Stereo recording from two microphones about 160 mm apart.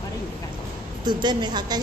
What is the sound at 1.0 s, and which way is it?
Speech, 25° right (ahead or behind).